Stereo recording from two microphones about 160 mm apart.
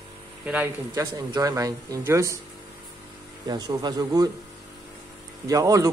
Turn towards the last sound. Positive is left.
turn(degrees=-20)  # may be behind; listen again after turning